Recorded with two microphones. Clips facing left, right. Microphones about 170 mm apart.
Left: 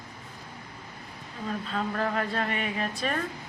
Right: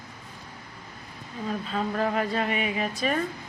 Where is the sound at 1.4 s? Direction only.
5° right (ahead or behind).